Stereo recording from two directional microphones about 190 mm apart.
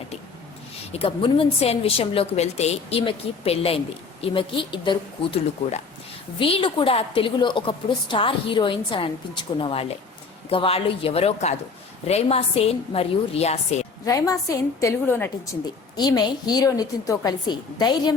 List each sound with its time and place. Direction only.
0.9 s a woman's voice: 30° left (ahead or behind)
14.0 s a woman's voice: 15° left (ahead or behind)
16.0 s a woman's voice: 20° left (ahead or behind)